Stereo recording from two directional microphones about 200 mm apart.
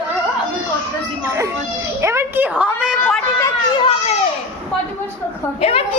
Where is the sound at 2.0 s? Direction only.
15° right (ahead or behind).